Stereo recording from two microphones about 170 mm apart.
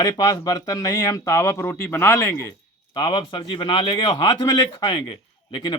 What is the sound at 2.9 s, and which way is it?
Speech, 25° left (ahead or behind).